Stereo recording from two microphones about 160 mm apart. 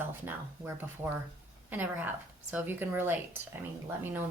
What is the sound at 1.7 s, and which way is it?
Speech, 10° right (ahead or behind).